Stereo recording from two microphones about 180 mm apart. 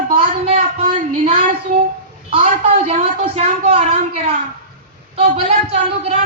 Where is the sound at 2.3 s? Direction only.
35° right (ahead or behind).